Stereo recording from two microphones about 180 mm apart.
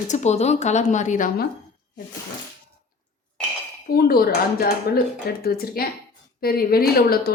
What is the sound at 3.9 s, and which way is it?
Dishes, 60° left (ahead or behind).